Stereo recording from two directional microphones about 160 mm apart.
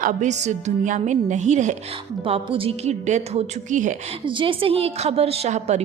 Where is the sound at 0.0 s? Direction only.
50° right (ahead or behind).